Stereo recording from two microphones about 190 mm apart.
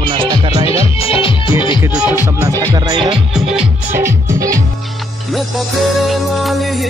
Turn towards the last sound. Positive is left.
turn(degrees=0)  # may be behind; listen again after turning